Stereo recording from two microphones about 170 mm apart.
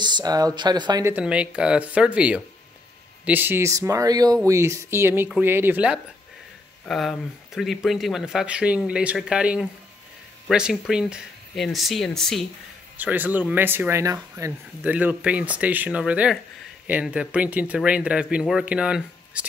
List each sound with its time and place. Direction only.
0.0 s a sound: 25° right (ahead or behind)
0.6 s speech: 25° right (ahead or behind)
1.0 s speech: 10° right (ahead or behind)
12.9 s speech: 10° right (ahead or behind)